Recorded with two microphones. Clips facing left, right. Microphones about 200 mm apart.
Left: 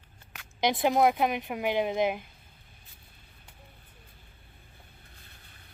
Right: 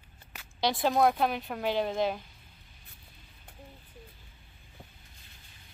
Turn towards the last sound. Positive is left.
turn(degrees=60)  # may be behind; listen again after turning